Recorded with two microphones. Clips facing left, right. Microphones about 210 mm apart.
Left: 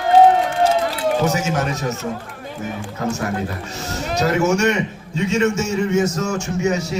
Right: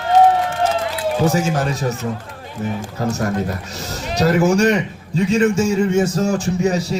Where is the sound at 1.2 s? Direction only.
30° right (ahead or behind).